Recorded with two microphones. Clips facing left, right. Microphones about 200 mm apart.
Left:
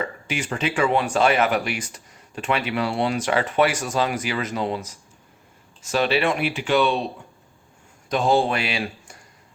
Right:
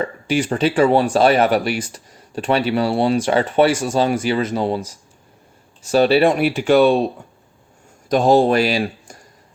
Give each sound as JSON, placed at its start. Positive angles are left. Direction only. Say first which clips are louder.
{"t": 0.0, "sound": "speech", "louder": "right 8 dB", "side_deg": -35}
{"t": 8.1, "sound": "speech", "louder": "right 7 dB", "side_deg": -40}